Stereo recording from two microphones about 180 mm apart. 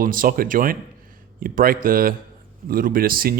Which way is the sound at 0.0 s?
50° right (ahead or behind).